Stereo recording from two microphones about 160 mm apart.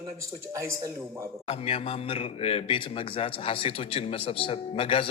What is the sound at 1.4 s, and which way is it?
Speech, 40° left (ahead or behind).